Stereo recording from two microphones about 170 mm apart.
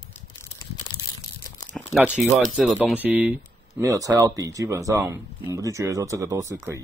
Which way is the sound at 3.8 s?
20° right (ahead or behind).